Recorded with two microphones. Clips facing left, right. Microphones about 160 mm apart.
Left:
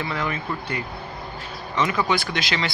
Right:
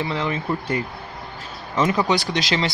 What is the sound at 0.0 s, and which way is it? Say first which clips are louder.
Speech: right 3 dB; 25° right (ahead or behind).